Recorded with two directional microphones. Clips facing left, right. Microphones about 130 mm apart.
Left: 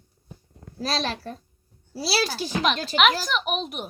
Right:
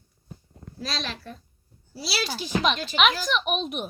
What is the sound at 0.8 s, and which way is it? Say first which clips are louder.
A child's voice: left 6 dB; 40° left (ahead or behind).